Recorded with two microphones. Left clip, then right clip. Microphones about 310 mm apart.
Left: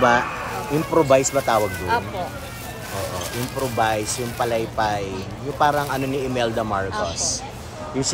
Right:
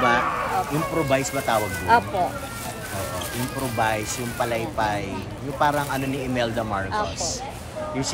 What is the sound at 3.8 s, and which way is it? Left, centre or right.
Speech, centre.